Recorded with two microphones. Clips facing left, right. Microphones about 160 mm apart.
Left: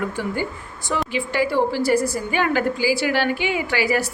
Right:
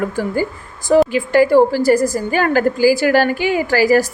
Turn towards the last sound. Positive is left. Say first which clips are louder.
# right 8 dB
turn(degrees=-40)  # may be behind; listen again after turning